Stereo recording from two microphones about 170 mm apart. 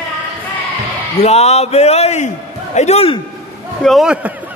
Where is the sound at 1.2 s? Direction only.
40° left (ahead or behind).